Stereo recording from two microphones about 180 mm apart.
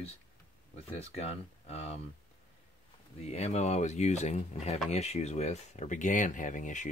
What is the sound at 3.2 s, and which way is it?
Speech, 35° left (ahead or behind).